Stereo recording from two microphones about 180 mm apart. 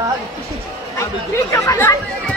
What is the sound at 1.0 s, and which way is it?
Speech, 15° left (ahead or behind).